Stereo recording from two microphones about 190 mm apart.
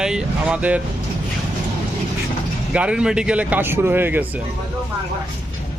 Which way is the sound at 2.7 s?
5° right (ahead or behind).